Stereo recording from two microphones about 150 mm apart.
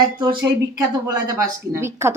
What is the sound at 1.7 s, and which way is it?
Speech, 20° right (ahead or behind).